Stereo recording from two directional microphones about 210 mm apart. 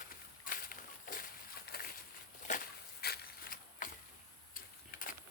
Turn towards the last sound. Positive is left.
turn(degrees=45)  # may be behind; listen again after turning